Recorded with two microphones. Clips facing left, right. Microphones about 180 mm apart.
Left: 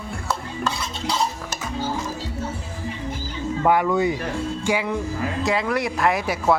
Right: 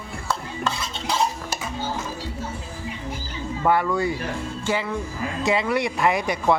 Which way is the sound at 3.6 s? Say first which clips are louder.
Left 2 dB; 15° left (ahead or behind).